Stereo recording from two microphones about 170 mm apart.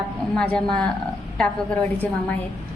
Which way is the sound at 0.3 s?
5° left (ahead or behind).